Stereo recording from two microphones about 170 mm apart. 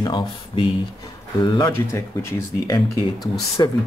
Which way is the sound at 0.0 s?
25° left (ahead or behind).